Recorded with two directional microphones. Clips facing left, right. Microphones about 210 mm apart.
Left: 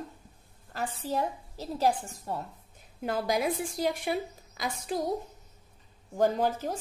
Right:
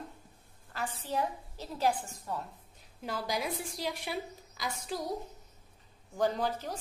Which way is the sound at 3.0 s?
55° left (ahead or behind).